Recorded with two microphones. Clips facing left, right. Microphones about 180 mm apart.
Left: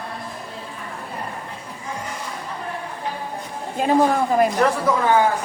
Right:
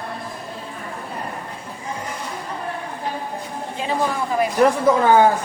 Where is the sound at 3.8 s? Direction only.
45° left (ahead or behind).